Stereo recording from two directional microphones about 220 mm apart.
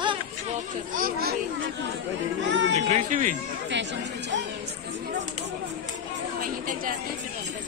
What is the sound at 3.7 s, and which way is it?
Speech, 55° right (ahead or behind).